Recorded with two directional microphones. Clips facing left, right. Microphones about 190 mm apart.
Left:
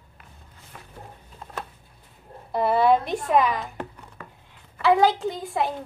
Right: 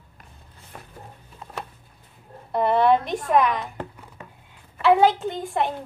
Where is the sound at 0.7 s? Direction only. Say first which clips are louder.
Right 3 dB; 40° right (ahead or behind).